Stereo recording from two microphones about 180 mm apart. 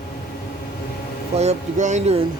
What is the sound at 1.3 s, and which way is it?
Speech, 40° right (ahead or behind).